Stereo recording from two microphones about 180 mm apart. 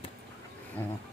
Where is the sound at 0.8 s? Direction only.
10° left (ahead or behind).